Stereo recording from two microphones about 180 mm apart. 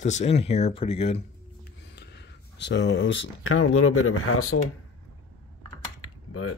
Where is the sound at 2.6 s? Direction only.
70° left (ahead or behind); by 3.3 s 90° left.